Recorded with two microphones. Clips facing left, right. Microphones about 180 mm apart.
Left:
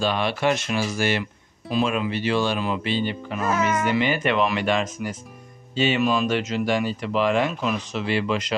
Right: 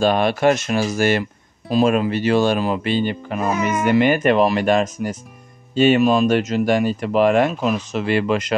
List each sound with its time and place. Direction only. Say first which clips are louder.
0.0 s speech: right 6 dB; 45° right (ahead or behind)
3.4 s speech: right 2 dB; 15° right (ahead or behind)
3.8 s speech: right 7 dB; 50° right (ahead or behind)